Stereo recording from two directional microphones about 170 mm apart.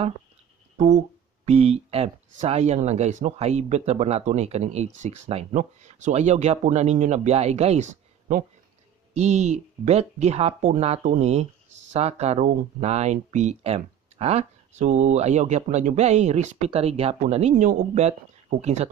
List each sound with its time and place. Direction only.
0.7 s speech: 45° right (ahead or behind)
9.1 s speech: 45° right (ahead or behind)